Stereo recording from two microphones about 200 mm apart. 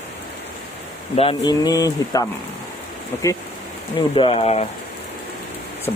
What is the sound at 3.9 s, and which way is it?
Speech, 25° left (ahead or behind).